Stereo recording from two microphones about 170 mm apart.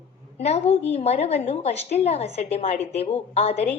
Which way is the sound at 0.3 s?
40° left (ahead or behind).